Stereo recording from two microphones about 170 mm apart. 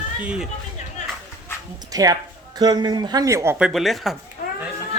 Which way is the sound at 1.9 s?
20° right (ahead or behind).